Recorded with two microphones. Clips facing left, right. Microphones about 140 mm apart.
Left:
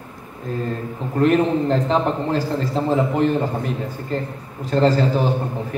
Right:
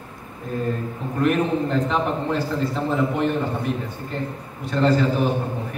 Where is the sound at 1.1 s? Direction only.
35° left (ahead or behind).